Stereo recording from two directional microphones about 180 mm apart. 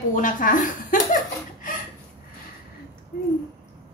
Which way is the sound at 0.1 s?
45° left (ahead or behind).